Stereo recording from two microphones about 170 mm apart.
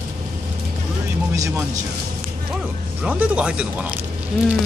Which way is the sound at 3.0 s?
10° right (ahead or behind).